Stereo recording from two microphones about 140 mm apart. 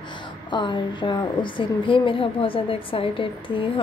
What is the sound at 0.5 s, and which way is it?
A woman's voice, 35° left (ahead or behind).